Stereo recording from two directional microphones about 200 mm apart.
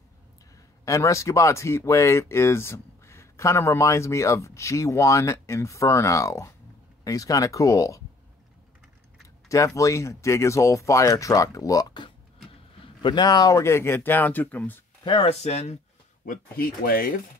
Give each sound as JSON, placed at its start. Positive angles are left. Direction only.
{"t": 0.8, "sound": "speech", "side_deg": 15}
{"t": 9.8, "sound": "speech", "side_deg": 15}
{"t": 15.0, "sound": "speech", "side_deg": 30}
{"t": 16.3, "sound": "speech", "side_deg": 50}